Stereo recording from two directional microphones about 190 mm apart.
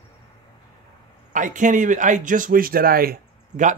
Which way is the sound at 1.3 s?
40° right (ahead or behind).